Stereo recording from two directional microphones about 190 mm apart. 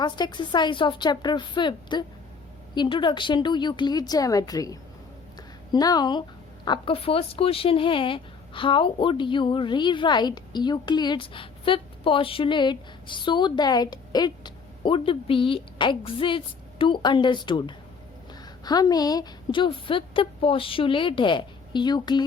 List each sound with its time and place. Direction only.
0.0 s speech: 25° left (ahead or behind)
5.4 s a sound: 20° left (ahead or behind)
6.7 s speech: 30° left (ahead or behind)